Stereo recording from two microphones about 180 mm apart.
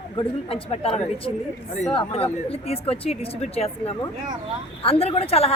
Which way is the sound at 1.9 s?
30° left (ahead or behind).